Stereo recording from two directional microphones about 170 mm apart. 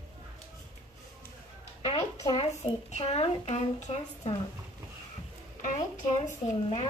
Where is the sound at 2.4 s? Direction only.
35° left (ahead or behind).